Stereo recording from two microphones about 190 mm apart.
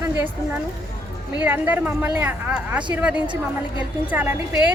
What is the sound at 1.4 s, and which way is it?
Speech, 10° right (ahead or behind).